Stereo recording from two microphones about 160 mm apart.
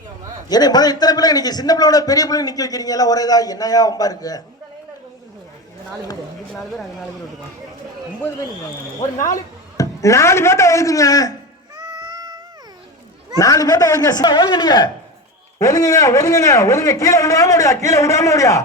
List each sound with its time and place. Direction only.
0.4 s a man's voice: 25° left (ahead or behind)
6.5 s speech: centre (ahead or behind)
9.3 s speech: 20° left (ahead or behind)
11.8 s a sound: 25° right (ahead or behind)
13.4 s a man's voice: 20° left (ahead or behind)